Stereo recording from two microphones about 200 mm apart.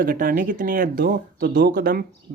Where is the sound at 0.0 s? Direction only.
45° right (ahead or behind).